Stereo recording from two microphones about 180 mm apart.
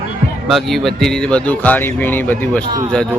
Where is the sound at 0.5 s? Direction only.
Centre (ahead or behind).